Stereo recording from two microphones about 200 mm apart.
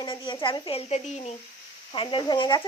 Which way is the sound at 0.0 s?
25° left (ahead or behind).